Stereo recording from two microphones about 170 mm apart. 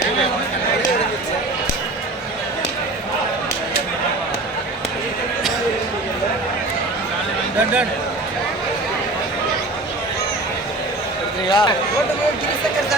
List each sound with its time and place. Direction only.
11.4 s speech: 30° left (ahead or behind)